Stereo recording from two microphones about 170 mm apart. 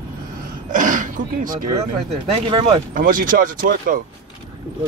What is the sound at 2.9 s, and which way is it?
Speech, 55° right (ahead or behind).